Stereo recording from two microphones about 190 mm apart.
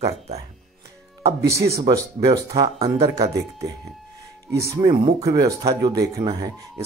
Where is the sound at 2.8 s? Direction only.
35° right (ahead or behind).